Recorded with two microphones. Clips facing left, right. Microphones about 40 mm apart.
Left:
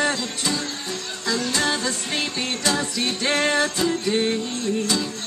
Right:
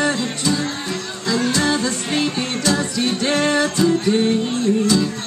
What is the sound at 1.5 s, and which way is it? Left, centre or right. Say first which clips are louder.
Music: right 5 dB; centre.